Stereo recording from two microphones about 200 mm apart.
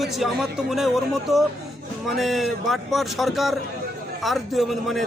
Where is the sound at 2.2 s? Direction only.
Centre (ahead or behind).